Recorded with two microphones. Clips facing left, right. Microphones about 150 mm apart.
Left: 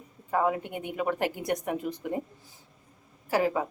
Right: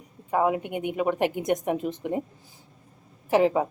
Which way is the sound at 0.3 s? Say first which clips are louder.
Right 3 dB; 15° right (ahead or behind).